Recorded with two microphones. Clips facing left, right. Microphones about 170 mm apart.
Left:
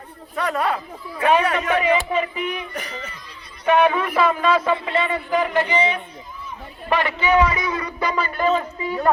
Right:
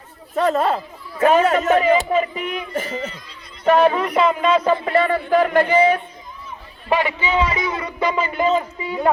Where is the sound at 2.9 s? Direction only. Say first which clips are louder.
Right 7 dB; 25° right (ahead or behind).